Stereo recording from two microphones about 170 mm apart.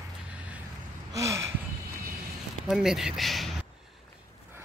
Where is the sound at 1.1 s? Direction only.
15° right (ahead or behind).